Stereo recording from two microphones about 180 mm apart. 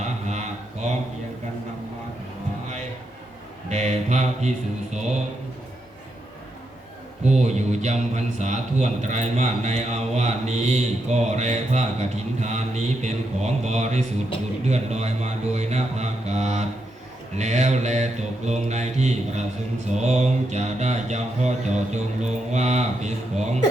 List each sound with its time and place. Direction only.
0.0 s a sound: 40° right (ahead or behind)
3.7 s mantra: 40° right (ahead or behind)
7.3 s a man's voice: 40° right (ahead or behind)